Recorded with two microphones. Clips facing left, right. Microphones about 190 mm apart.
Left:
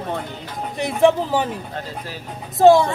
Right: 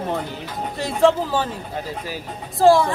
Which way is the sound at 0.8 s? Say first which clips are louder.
Left 1 dB; 15° left (ahead or behind).